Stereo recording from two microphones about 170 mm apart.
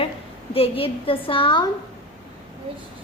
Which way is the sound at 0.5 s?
35° left (ahead or behind).